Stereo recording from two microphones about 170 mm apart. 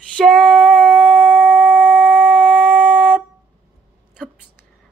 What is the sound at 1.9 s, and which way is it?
Shofar, 5° right (ahead or behind).